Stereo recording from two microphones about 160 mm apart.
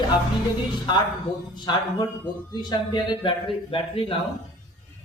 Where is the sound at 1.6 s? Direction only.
25° left (ahead or behind).